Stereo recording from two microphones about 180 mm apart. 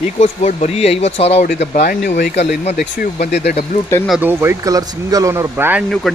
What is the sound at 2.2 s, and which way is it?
Speech, 70° left (ahead or behind).